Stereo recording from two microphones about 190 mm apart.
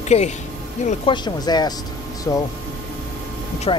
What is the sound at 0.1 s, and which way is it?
Speech, 30° left (ahead or behind).